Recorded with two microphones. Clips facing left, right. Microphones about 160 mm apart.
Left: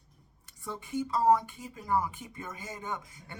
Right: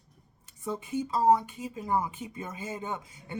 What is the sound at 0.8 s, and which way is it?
Speech, 25° right (ahead or behind).